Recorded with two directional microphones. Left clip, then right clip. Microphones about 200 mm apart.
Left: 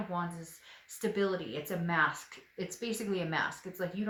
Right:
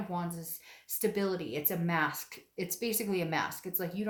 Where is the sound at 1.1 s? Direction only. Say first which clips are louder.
Left 1 dB; 45° right (ahead or behind).